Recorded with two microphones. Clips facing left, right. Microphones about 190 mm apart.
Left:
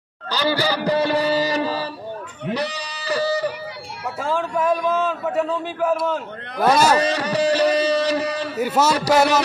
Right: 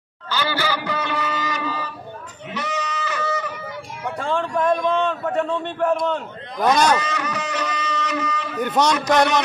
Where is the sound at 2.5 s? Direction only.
35° left (ahead or behind).